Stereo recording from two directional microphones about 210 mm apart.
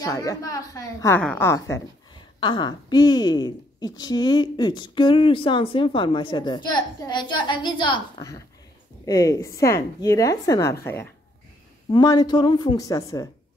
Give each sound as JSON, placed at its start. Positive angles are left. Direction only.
{"t": 0.0, "sound": "a woman's voice", "side_deg": 15}